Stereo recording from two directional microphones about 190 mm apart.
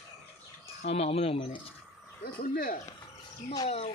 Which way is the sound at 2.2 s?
50° left (ahead or behind).